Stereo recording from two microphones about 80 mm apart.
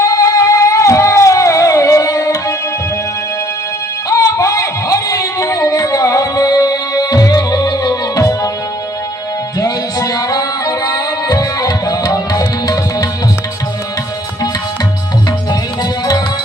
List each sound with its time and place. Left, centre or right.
0.0 s a sound: left
4.1 s music: left
9.6 s music: left
15.8 s music: left